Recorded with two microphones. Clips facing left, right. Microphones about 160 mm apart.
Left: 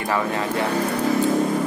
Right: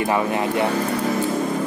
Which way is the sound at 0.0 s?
20° right (ahead or behind).